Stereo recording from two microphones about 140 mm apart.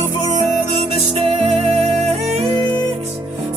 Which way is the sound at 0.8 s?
50° right (ahead or behind).